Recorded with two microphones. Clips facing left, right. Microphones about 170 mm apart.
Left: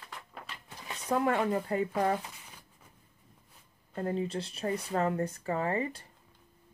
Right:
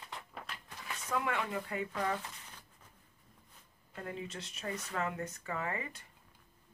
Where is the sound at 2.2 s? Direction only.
10° left (ahead or behind).